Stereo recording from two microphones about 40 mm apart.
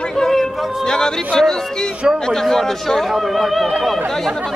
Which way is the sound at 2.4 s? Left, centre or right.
Centre.